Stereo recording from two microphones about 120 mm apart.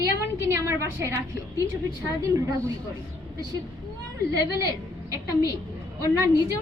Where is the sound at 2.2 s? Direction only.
30° right (ahead or behind).